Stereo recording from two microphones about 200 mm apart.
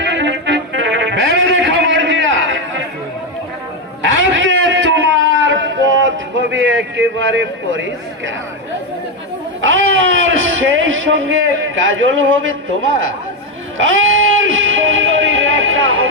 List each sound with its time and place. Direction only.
0.0 s music: 60° right (ahead or behind)
4.0 s a sound: 70° right (ahead or behind)
9.6 s speech: 65° right (ahead or behind)
13.7 s music: 75° right (ahead or behind)